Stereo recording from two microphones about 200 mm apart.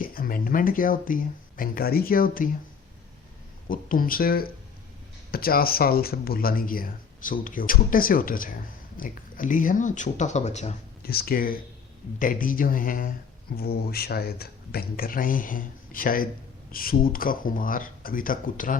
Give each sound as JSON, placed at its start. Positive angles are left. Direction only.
{"t": 0.0, "sound": "speech", "side_deg": 45}
{"t": 3.7, "sound": "speech", "side_deg": 45}
{"t": 11.0, "sound": "speech", "side_deg": 50}